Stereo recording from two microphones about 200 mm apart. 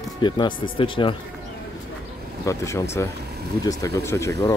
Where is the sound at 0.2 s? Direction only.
20° left (ahead or behind).